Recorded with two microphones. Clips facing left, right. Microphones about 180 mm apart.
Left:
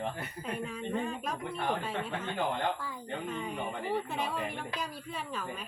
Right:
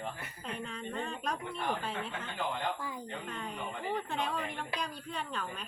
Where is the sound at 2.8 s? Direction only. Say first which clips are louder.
Right 1 dB; 15° right (ahead or behind).